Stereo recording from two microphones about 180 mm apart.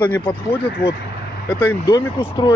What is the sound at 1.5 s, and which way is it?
Speech, 15° left (ahead or behind).